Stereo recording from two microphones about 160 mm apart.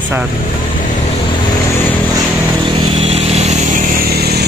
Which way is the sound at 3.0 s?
40° right (ahead or behind).